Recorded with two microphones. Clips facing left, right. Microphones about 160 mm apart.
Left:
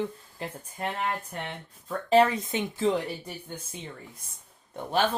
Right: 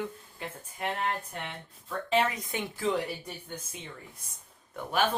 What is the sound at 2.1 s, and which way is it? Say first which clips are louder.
Speech: left 7 dB; 40° left (ahead or behind).